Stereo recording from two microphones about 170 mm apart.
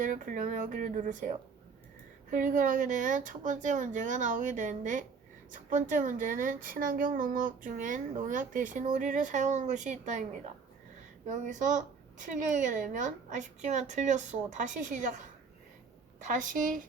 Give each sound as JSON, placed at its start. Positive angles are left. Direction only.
{"t": 0.0, "sound": "speech", "side_deg": -50}
{"t": 11.3, "sound": "speech", "side_deg": -45}
{"t": 16.2, "sound": "speech", "side_deg": -50}